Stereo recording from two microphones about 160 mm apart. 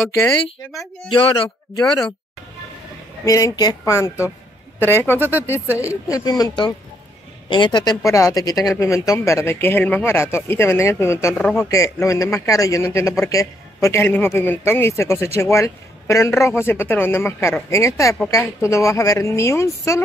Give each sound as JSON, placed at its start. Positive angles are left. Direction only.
{"t": 0.0, "sound": "speech", "side_deg": 20}
{"t": 1.1, "sound": "a man's voice", "side_deg": 30}
{"t": 1.8, "sound": "speech", "side_deg": 20}
{"t": 3.3, "sound": "a man's voice", "side_deg": 20}
{"t": 11.3, "sound": "speech", "side_deg": 5}
{"t": 11.7, "sound": "a man's voice", "side_deg": 20}